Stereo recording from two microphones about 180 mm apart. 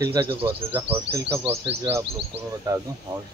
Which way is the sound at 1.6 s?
30° right (ahead or behind).